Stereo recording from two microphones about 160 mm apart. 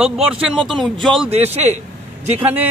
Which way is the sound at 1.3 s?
45° right (ahead or behind).